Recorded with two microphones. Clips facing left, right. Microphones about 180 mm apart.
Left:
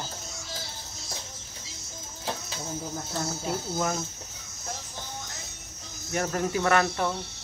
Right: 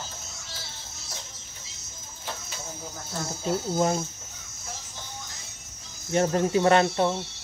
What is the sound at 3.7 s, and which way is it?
Speech, 25° right (ahead or behind).